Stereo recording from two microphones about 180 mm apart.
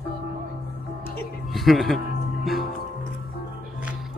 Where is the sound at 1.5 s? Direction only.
Centre (ahead or behind).